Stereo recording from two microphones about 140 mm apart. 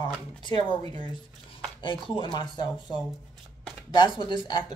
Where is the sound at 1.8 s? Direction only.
35° left (ahead or behind).